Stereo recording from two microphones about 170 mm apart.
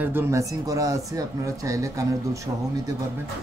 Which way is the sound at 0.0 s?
15° right (ahead or behind).